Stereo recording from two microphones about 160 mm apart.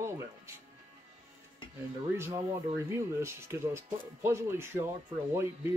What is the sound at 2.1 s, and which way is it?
Speech, 15° right (ahead or behind).